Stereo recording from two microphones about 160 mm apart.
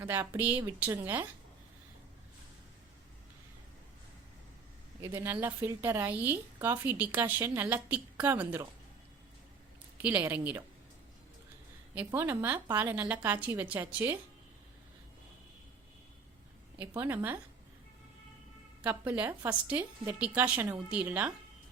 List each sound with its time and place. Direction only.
0.0 s speech: 15° right (ahead or behind)
4.9 s speech: 15° right (ahead or behind)
10.0 s speech: 10° right (ahead or behind)
11.9 s speech: 15° right (ahead or behind)
16.7 s speech: 15° right (ahead or behind)
18.9 s speech: 10° right (ahead or behind)